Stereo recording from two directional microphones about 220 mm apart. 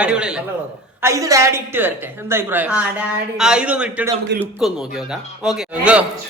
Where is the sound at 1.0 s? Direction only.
15° right (ahead or behind).